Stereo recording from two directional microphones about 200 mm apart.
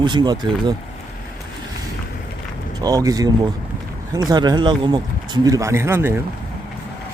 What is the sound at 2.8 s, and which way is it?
Speech, 20° right (ahead or behind).